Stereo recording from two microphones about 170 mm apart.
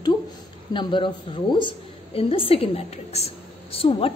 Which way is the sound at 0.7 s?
30° left (ahead or behind).